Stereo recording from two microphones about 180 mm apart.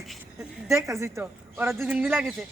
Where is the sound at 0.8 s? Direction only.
15° right (ahead or behind).